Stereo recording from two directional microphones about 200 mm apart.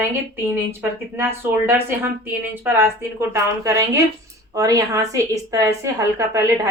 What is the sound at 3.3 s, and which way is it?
A woman's voice, 15° right (ahead or behind).